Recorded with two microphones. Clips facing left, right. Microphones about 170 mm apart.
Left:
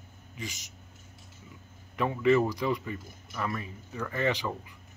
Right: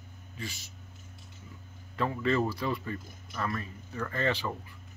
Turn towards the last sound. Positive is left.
turn(degrees=15)  # may be behind; listen again after turning